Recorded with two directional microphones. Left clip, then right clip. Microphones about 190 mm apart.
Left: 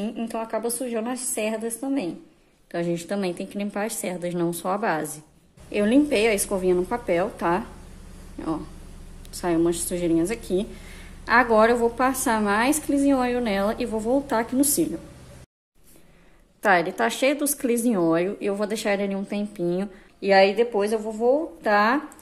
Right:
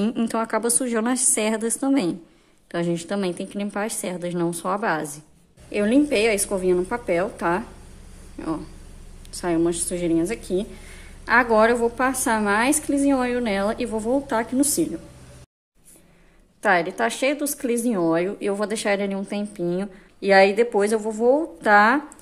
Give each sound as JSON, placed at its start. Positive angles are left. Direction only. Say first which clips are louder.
{"t": 0.0, "sound": "a woman's voice", "louder": "right 5 dB", "side_deg": -40}
{"t": 2.7, "sound": "speech", "louder": "right 1 dB", "side_deg": -15}
{"t": 16.6, "sound": "speech", "louder": "even", "side_deg": 0}
{"t": 20.2, "sound": "speech", "louder": "right 2 dB", "side_deg": -15}